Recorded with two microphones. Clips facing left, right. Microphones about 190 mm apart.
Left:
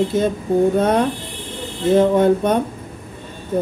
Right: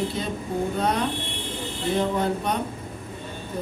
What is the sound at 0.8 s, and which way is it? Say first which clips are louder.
Speech: left 7 dB; 50° left (ahead or behind).